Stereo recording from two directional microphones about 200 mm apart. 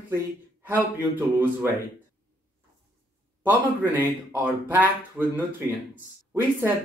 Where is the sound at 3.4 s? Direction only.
10° right (ahead or behind).